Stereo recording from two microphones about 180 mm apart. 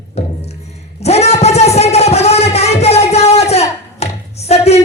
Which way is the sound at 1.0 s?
35° left (ahead or behind).